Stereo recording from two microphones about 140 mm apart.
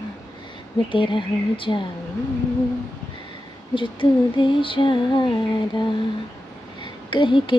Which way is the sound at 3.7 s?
35° left (ahead or behind).